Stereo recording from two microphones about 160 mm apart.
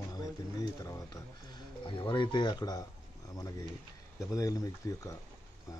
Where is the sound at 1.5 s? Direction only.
30° left (ahead or behind).